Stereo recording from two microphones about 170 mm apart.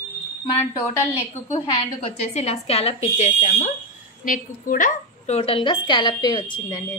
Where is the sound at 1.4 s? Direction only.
35° left (ahead or behind).